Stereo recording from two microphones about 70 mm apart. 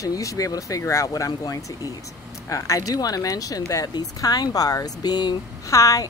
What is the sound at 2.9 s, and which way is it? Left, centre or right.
Speech, left.